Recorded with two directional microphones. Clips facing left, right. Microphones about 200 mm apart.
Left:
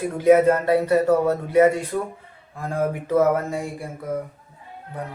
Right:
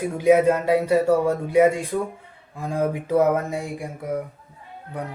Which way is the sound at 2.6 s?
15° right (ahead or behind).